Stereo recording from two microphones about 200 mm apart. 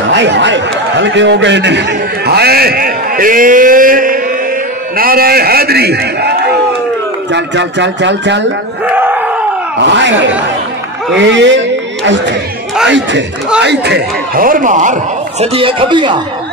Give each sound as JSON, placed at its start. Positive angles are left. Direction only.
{"t": 0.1, "sound": "a man's voice", "side_deg": -65}
{"t": 8.9, "sound": "crowd", "side_deg": -10}
{"t": 9.8, "sound": "speech", "side_deg": -60}
{"t": 11.1, "sound": "a man's voice", "side_deg": -65}
{"t": 15.4, "sound": "speech", "side_deg": -25}